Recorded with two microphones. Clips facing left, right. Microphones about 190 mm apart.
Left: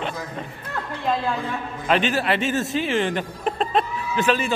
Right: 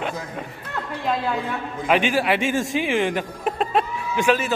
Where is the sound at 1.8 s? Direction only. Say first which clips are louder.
Right 1 dB; 10° right (ahead or behind).